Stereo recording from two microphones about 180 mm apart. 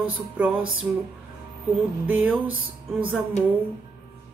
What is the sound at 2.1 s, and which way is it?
Speech, 10° right (ahead or behind).